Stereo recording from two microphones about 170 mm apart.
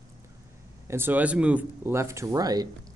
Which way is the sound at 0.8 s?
15° right (ahead or behind).